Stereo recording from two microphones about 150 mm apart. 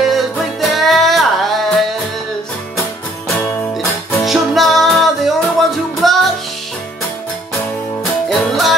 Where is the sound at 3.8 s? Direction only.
20° left (ahead or behind).